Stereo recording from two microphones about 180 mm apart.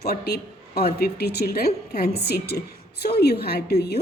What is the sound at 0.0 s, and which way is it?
A woman's voice, 60° left (ahead or behind).